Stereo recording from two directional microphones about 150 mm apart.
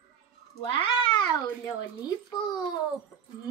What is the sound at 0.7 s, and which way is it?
Cat, 35° left (ahead or behind).